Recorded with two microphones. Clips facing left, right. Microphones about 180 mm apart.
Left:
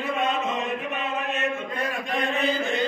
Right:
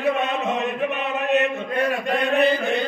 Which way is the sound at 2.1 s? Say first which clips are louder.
Right 6 dB; 65° right (ahead or behind).